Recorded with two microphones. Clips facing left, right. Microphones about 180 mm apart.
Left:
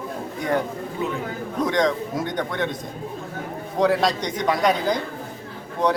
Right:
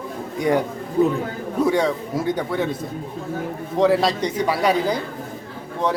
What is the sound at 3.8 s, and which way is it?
A man's voice, centre (ahead or behind).